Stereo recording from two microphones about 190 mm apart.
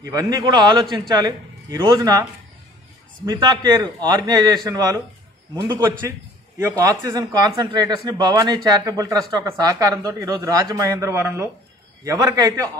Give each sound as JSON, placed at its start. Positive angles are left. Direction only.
{"t": 0.0, "sound": "a man's voice", "side_deg": -20}
{"t": 3.3, "sound": "a man's voice", "side_deg": -20}